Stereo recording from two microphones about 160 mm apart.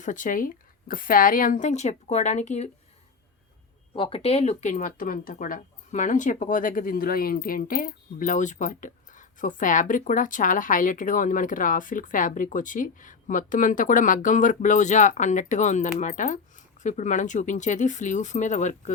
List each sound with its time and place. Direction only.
0.0 s speech: 55° left (ahead or behind)
3.9 s speech: 35° left (ahead or behind)